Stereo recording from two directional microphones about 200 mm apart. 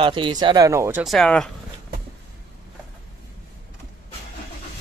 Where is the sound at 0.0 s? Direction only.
25° right (ahead or behind).